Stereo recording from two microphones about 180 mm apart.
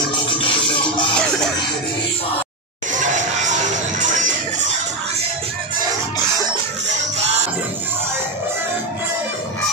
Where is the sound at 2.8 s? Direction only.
45° right (ahead or behind).